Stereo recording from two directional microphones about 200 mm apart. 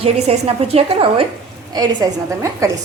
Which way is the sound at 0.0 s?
30° right (ahead or behind).